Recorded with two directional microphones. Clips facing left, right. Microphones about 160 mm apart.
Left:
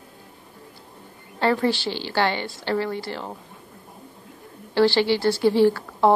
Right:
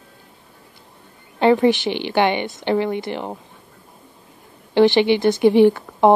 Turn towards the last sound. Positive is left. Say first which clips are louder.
# right 4 dB
turn(degrees=-20)  # may be behind; listen again after turning